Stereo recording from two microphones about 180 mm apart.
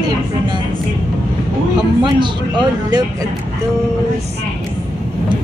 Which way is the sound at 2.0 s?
25° right (ahead or behind).